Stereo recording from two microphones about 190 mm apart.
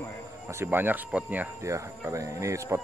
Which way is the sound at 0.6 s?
10° right (ahead or behind).